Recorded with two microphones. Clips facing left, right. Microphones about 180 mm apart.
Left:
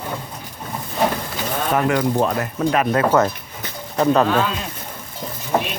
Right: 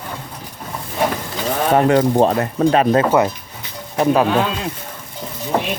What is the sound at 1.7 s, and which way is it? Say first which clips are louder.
Speech: right 5 dB; 35° right (ahead or behind).